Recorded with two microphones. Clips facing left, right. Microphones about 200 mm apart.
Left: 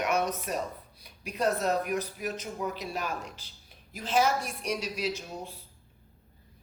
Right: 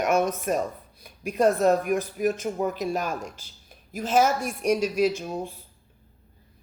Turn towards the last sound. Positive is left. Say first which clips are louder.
# right 9 dB
turn(degrees=-50)  # may be behind; listen again after turning